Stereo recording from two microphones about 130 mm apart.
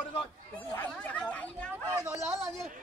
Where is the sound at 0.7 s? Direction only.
10° left (ahead or behind).